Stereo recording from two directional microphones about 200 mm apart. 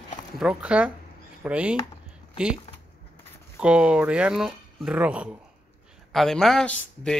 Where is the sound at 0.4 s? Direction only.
5° right (ahead or behind).